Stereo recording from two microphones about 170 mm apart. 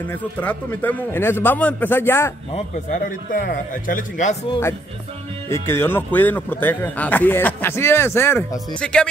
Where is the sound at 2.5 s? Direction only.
45° left (ahead or behind).